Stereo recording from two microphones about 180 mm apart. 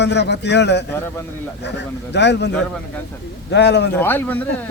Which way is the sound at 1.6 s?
70° left (ahead or behind).